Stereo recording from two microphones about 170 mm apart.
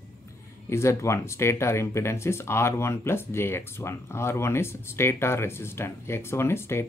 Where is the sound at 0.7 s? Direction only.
15° left (ahead or behind).